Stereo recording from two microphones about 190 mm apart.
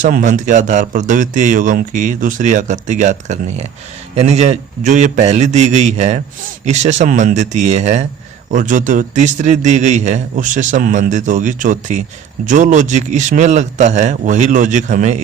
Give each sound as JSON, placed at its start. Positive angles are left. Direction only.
{"t": 0.0, "sound": "speech", "side_deg": -45}